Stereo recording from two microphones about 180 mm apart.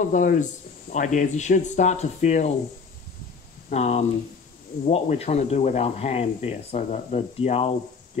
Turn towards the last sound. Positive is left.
turn(degrees=35)  # may be behind; listen again after turning